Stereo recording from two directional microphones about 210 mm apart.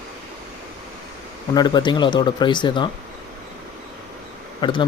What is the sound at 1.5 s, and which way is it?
Speech, 20° left (ahead or behind).